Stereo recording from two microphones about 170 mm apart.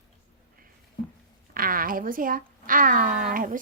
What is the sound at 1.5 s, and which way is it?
Speech, 55° right (ahead or behind).